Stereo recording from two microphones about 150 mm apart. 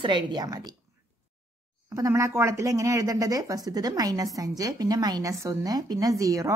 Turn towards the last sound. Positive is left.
turn(degrees=-20)  # may be behind; listen again after turning